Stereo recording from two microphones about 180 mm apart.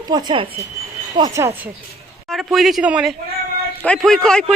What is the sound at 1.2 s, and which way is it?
Speech, 15° right (ahead or behind).